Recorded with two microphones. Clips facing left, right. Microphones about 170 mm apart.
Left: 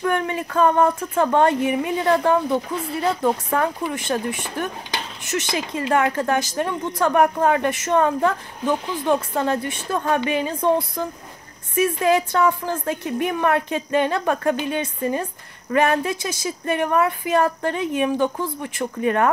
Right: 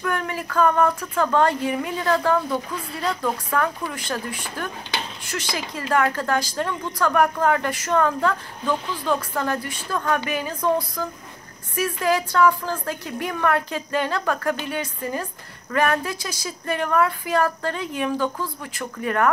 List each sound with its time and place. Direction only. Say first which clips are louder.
0.0 s speech: left 4 dB; 25° left (ahead or behind)